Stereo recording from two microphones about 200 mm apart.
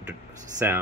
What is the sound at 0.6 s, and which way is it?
Speech, 10° right (ahead or behind).